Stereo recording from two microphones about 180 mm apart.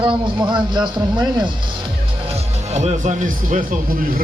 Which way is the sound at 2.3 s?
40° right (ahead or behind).